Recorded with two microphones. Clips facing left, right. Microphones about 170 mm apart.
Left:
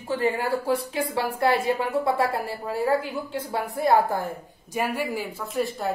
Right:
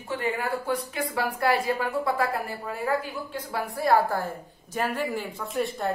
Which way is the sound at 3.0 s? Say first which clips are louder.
Left 4 dB; 20° left (ahead or behind).